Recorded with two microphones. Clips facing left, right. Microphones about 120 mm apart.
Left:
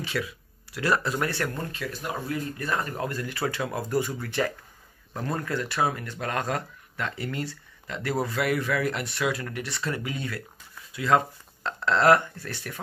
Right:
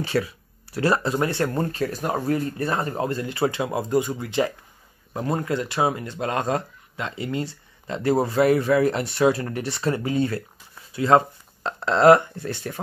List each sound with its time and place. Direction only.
0.0 s speech: 35° right (ahead or behind)
1.5 s speech: 40° right (ahead or behind)
2.5 s speech: 30° right (ahead or behind)